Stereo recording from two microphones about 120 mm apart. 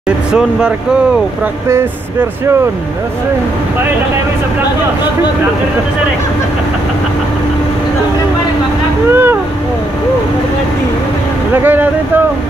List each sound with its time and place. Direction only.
0.3 s speech: 5° right (ahead or behind)
9.1 s vehicle: 20° right (ahead or behind)
11.5 s speech: 15° right (ahead or behind)